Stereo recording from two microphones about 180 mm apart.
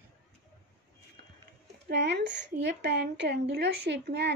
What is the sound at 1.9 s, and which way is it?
A woman's voice, 75° right (ahead or behind).